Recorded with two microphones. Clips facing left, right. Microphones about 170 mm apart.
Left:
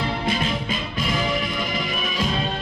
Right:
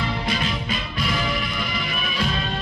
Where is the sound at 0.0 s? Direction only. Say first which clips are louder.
Left 1 dB; 25° left (ahead or behind).